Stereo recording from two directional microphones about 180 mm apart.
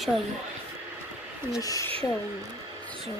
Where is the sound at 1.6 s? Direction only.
20° left (ahead or behind).